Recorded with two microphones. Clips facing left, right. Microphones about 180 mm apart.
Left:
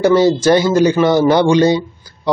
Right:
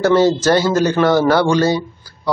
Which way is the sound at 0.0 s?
10° left (ahead or behind).